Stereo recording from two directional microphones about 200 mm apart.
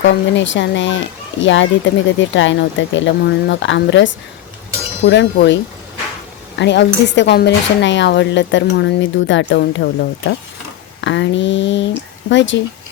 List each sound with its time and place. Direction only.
0.0 s speech: 65° left (ahead or behind)
6.6 s speech: 60° left (ahead or behind)